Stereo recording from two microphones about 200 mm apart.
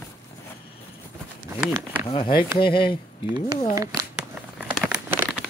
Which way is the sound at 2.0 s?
25° left (ahead or behind).